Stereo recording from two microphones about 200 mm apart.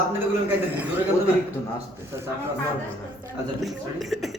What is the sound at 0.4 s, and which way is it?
Speech, 10° right (ahead or behind).